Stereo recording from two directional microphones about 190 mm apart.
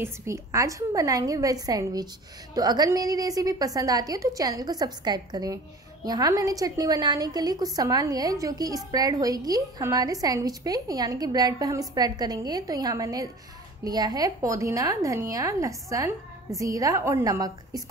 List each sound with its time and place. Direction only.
0.0 s a woman's voice: 15° right (ahead or behind)